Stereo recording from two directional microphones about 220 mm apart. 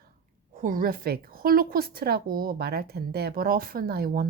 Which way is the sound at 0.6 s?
40° right (ahead or behind).